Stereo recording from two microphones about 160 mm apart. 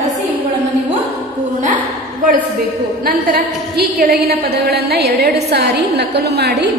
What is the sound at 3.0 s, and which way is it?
A woman's voice, 65° right (ahead or behind).